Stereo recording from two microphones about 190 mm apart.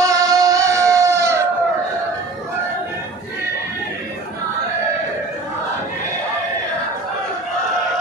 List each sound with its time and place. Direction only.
0.0 s music: 20° right (ahead or behind)